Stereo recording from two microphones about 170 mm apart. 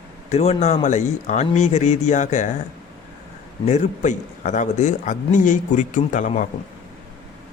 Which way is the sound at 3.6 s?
45° left (ahead or behind).